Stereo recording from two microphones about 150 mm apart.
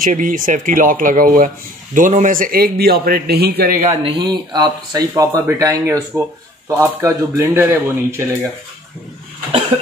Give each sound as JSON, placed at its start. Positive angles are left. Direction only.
{"t": 0.0, "sound": "a man's voice", "side_deg": -60}
{"t": 3.8, "sound": "speech", "side_deg": -45}